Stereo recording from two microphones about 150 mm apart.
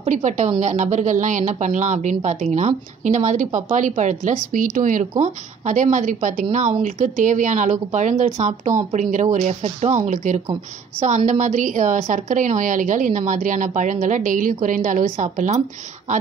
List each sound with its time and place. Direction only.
0.0 s a woman's voice: 55° right (ahead or behind)